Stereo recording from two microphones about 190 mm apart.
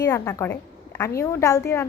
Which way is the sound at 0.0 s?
15° left (ahead or behind).